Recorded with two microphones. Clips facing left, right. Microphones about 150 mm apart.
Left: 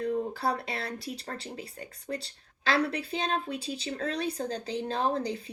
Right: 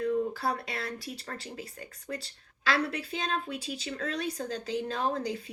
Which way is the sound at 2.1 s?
40° left (ahead or behind).